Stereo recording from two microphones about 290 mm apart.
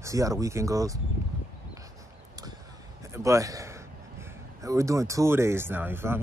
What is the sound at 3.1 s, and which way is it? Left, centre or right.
Speech, centre.